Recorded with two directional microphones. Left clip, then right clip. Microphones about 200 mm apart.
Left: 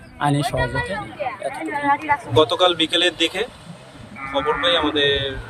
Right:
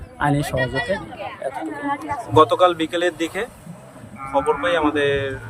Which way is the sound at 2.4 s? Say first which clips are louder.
Right 3 dB; 10° right (ahead or behind).